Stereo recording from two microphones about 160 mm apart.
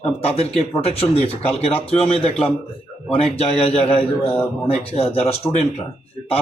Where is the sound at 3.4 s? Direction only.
40° left (ahead or behind).